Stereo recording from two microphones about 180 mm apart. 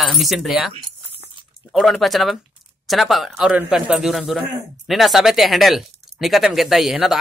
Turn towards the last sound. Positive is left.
turn(degrees=0)  # may be behind; listen again after turning